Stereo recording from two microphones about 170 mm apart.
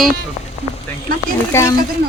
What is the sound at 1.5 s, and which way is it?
Speech, 15° left (ahead or behind).